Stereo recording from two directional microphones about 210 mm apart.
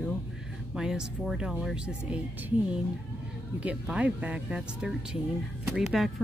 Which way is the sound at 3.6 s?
5° right (ahead or behind).